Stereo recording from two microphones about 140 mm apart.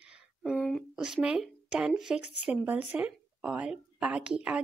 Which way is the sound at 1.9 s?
5° right (ahead or behind).